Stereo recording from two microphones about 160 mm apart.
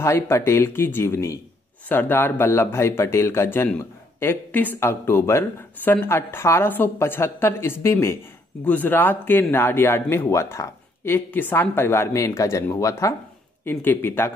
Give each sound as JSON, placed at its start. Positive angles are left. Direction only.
{"t": 0.0, "sound": "speech", "side_deg": 15}